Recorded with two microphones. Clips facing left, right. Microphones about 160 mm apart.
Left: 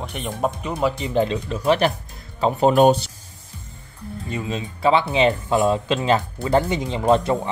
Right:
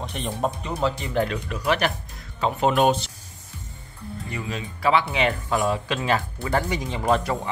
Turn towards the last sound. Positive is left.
turn(degrees=25)  # may be behind; listen again after turning